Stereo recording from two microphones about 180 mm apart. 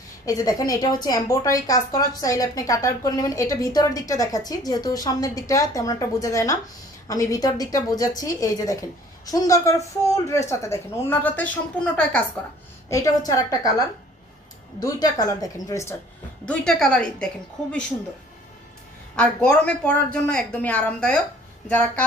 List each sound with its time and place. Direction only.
0.3 s a woman's voice: 20° left (ahead or behind)
12.9 s a woman's voice: 20° left (ahead or behind)
16.5 s speech: 5° left (ahead or behind)
19.1 s a woman's voice: 5° left (ahead or behind)